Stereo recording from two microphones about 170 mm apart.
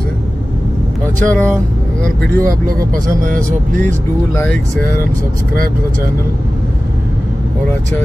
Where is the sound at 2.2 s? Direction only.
60° right (ahead or behind).